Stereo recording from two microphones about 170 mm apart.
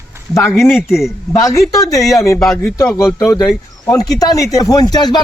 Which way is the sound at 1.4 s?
20° left (ahead or behind).